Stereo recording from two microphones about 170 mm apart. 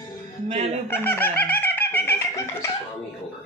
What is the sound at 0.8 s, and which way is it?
Speech, 10° left (ahead or behind).